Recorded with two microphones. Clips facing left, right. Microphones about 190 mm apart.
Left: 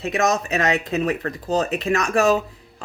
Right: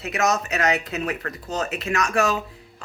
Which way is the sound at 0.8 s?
30° left (ahead or behind).